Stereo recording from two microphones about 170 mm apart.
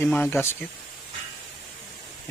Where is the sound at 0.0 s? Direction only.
15° left (ahead or behind).